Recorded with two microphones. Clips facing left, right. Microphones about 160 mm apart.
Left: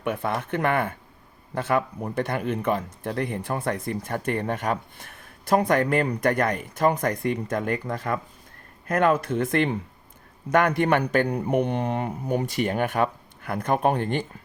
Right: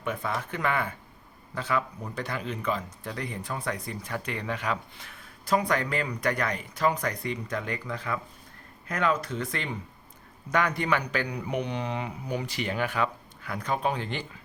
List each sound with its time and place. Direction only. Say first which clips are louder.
0.0 s speech: left 4 dB; 60° left (ahead or behind)